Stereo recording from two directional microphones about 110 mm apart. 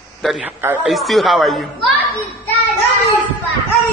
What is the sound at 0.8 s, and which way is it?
Speech, centre (ahead or behind).